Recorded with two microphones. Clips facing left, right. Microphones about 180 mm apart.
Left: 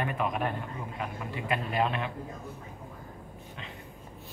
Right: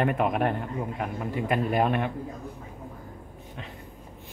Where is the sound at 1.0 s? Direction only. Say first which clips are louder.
Right 3 dB; 45° right (ahead or behind).